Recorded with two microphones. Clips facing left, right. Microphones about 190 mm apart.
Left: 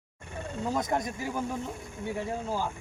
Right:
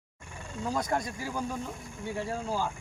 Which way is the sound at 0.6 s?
20° left (ahead or behind).